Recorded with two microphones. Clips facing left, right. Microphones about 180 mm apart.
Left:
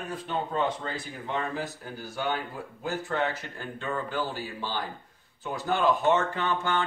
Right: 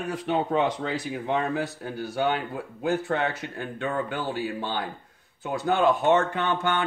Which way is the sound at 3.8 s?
60° right (ahead or behind).